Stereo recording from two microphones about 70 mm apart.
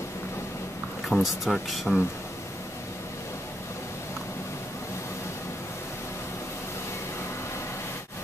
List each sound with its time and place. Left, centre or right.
1.0 s speech: centre